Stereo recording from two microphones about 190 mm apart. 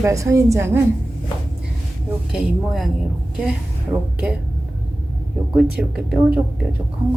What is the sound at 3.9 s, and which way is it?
Speech, 5° right (ahead or behind).